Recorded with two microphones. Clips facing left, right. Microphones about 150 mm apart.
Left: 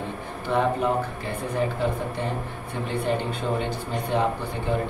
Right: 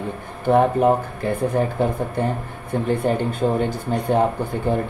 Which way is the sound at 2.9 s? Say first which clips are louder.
Right 5 dB; 50° right (ahead or behind).